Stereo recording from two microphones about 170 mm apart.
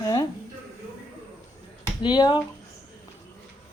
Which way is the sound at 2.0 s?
25° left (ahead or behind).